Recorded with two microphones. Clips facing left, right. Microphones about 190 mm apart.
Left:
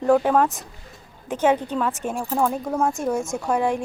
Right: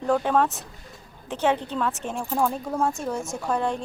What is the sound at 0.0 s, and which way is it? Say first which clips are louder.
A woman's voice: left 4 dB; 10° left (ahead or behind).